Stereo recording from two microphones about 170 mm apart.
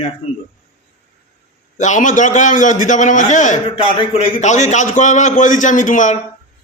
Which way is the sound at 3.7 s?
30° left (ahead or behind).